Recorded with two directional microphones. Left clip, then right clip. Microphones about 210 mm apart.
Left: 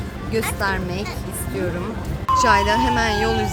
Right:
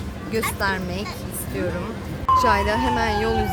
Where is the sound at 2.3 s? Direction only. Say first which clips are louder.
Left 2 dB; centre (ahead or behind).